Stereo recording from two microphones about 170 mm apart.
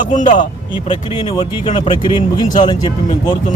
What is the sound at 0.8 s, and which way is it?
Speech, 30° left (ahead or behind).